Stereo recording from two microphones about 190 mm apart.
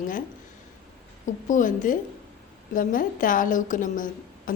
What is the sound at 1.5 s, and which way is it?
A woman's voice, 45° left (ahead or behind).